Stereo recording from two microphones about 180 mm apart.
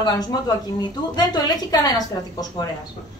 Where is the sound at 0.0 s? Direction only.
20° left (ahead or behind).